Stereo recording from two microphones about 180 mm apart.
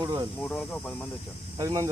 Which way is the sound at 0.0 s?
20° right (ahead or behind).